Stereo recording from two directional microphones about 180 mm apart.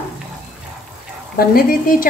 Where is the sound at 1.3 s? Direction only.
50° left (ahead or behind).